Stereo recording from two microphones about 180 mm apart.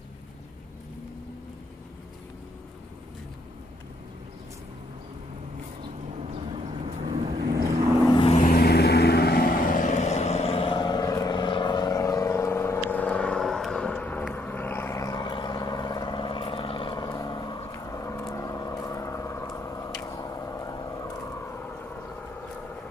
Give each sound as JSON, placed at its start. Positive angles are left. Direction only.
{"t": 6.5, "sound": "vehicle", "side_deg": -30}
{"t": 8.1, "sound": "vehicle", "side_deg": 30}
{"t": 8.5, "sound": "vehicle", "side_deg": 60}